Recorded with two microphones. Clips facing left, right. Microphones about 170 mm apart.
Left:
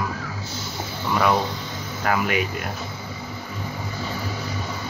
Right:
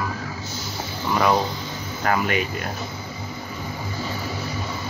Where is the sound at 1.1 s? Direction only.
10° right (ahead or behind).